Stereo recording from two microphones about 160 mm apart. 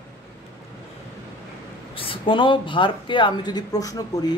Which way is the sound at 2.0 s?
35° left (ahead or behind).